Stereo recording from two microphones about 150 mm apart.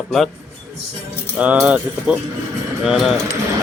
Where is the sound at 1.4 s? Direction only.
10° right (ahead or behind).